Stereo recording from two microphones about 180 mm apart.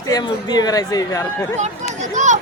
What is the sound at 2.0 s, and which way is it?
Speech, 40° right (ahead or behind).